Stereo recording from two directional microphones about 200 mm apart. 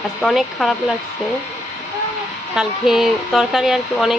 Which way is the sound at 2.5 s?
Centre (ahead or behind).